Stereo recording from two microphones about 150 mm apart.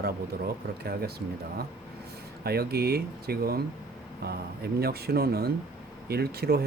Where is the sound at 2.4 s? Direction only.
90° right.